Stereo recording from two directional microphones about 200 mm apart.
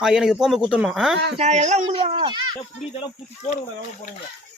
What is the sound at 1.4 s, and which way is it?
Speech, 35° right (ahead or behind).